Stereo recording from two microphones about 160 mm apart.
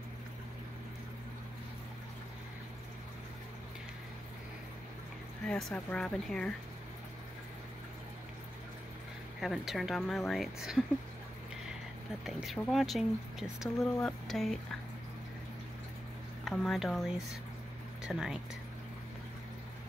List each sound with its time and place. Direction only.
5.5 s a woman's voice: 5° left (ahead or behind)
9.4 s a woman's voice: centre (ahead or behind)
12.3 s a woman's voice: 5° right (ahead or behind)
16.4 s a woman's voice: centre (ahead or behind)